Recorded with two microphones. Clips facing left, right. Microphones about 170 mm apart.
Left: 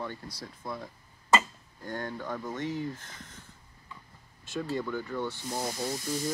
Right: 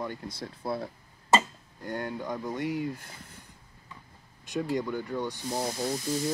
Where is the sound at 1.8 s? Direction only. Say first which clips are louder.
Right 2 dB; 10° right (ahead or behind).